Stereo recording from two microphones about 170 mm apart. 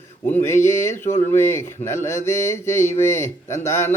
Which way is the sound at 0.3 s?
15° left (ahead or behind).